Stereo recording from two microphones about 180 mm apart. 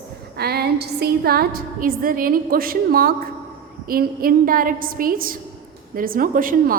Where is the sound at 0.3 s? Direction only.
60° right (ahead or behind).